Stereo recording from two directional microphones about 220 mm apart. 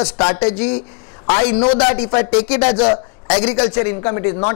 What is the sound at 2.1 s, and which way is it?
Speech, 15° left (ahead or behind).